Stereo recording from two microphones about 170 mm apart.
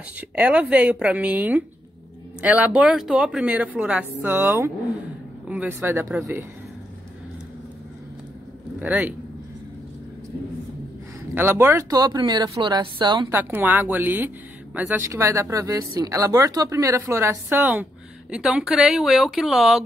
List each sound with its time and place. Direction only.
0.2 s speech: 10° right (ahead or behind)
8.8 s speech: 10° right (ahead or behind)
11.3 s speech: 15° right (ahead or behind)
13.3 s speech: 10° right (ahead or behind)